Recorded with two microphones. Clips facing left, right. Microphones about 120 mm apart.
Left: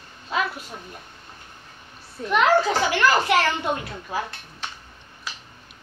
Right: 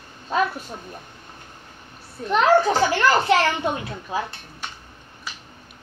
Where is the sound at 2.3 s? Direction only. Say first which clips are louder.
Right 2 dB; 30° right (ahead or behind).